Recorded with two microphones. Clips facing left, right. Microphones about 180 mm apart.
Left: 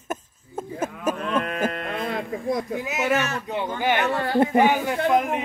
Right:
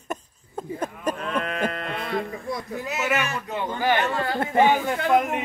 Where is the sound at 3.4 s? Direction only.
15° left (ahead or behind).